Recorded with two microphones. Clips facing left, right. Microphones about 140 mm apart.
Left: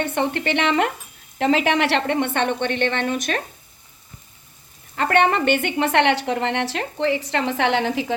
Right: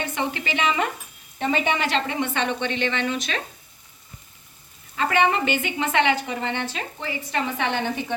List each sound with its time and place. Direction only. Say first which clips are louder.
0.0 s a woman's voice: left 5 dB; 55° left (ahead or behind)
1.4 s a woman's voice: left 5 dB; 85° left; by 3.4 s 50° left (ahead or behind)
4.9 s a woman's voice: left 3 dB; 60° left (ahead or behind); by 8.0 s 90° left